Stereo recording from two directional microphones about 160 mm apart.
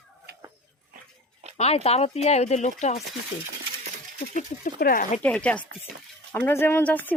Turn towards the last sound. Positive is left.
turn(degrees=10)  # may be behind; listen again after turning